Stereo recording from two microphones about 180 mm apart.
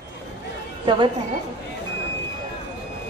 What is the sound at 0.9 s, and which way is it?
Speech, 25° right (ahead or behind).